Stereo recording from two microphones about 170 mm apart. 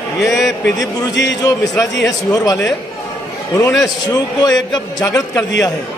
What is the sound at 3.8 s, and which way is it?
A man's voice, 20° left (ahead or behind).